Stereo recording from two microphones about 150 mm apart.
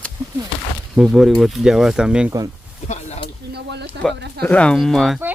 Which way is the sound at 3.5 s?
90° right.